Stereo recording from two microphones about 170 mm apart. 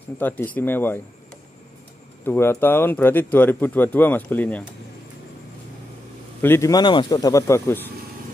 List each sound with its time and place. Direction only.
0.2 s speech: 10° left (ahead or behind)
2.2 s speech: 15° left (ahead or behind)
6.4 s speech: 15° left (ahead or behind)